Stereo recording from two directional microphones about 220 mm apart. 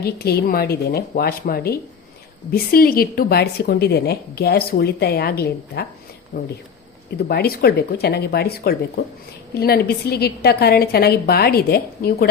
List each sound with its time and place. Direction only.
0.0 s a woman's voice: 45° left (ahead or behind)